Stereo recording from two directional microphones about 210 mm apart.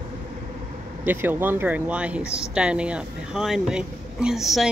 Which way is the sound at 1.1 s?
10° right (ahead or behind).